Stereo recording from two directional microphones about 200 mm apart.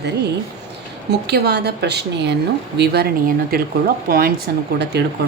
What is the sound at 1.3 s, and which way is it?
A woman's voice, 55° right (ahead or behind).